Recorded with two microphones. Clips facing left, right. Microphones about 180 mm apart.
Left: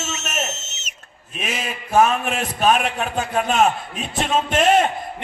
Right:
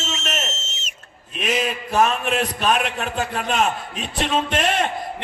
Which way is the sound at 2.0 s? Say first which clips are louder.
Left 2 dB; 45° left (ahead or behind).